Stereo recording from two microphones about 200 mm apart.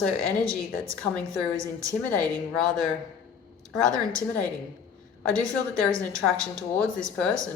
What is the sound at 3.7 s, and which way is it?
Speech, 5° left (ahead or behind).